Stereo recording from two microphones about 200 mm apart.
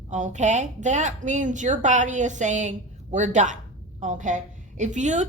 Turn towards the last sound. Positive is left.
turn(degrees=-35)  # may be behind; listen again after turning